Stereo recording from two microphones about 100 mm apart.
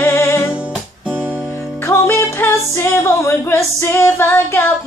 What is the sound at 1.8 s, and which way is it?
Music, 25° left (ahead or behind).